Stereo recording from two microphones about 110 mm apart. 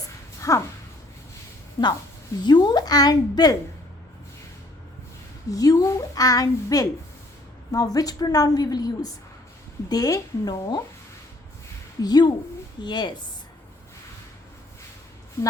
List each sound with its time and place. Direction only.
0.3 s a sound: 30° left (ahead or behind)
1.8 s a woman's voice: 30° left (ahead or behind)
2.4 s a woman's voice: 40° left (ahead or behind)
5.5 s a woman's voice: 30° left (ahead or behind)
12.0 s a woman's voice: 40° left (ahead or behind)